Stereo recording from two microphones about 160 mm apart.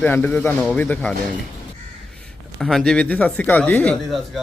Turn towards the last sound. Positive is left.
turn(degrees=10)  # may be behind; listen again after turning